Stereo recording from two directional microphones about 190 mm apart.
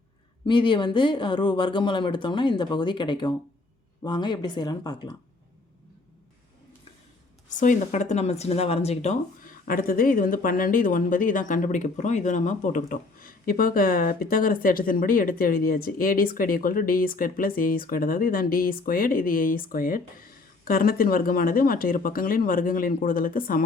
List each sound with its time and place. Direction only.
0.4 s speech: 25° left (ahead or behind)
7.6 s speech: 40° left (ahead or behind)